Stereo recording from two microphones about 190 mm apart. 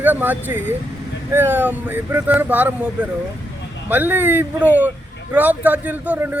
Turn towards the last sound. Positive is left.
turn(degrees=-10)  # may be behind; listen again after turning